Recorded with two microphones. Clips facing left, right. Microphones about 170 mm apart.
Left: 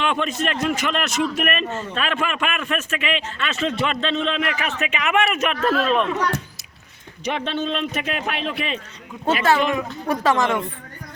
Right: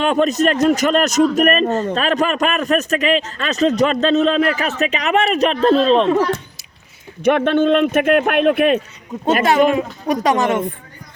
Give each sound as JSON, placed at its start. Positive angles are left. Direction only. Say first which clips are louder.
{"t": 0.0, "sound": "speech", "louder": "right 8 dB", "side_deg": -40}
{"t": 7.3, "sound": "speech", "louder": "right 11 dB", "side_deg": -55}
{"t": 9.7, "sound": "speech", "louder": "right 5 dB", "side_deg": -20}